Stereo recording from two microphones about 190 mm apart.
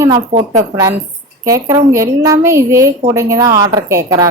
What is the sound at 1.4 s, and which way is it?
A woman's voice, 15° right (ahead or behind).